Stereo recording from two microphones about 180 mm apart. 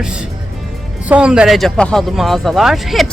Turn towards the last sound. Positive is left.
turn(degrees=0)  # may be behind; listen again after turning